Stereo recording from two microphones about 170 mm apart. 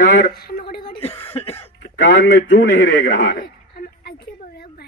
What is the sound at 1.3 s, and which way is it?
Cough, 35° left (ahead or behind).